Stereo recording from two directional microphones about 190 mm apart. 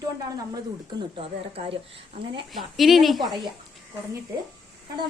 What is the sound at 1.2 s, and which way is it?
Speech, 30° right (ahead or behind).